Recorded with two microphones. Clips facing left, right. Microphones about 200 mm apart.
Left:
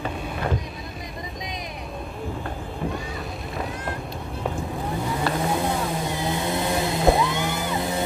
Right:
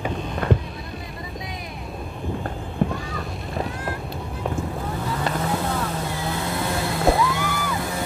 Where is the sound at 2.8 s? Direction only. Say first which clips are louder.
Right 5 dB; 55° right (ahead or behind).